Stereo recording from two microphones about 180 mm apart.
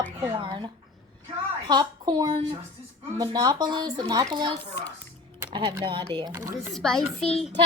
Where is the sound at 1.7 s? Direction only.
25° right (ahead or behind).